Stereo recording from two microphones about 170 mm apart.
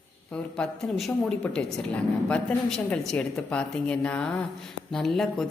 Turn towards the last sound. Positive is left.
turn(degrees=0)  # may be behind; listen again after turning